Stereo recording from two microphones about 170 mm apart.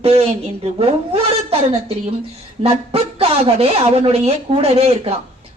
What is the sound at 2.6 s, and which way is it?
A woman's voice, 35° right (ahead or behind).